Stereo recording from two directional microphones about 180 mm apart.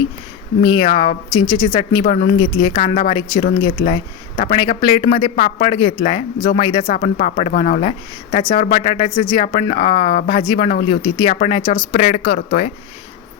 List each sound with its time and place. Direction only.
0.6 s speech: 25° left (ahead or behind)
6.9 s speech: 40° left (ahead or behind)